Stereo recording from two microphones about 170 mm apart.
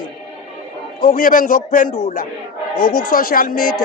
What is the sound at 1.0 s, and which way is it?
A man's voice, 55° left (ahead or behind).